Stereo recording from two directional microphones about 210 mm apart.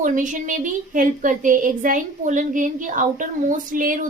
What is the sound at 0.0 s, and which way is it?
A woman's voice, 40° right (ahead or behind).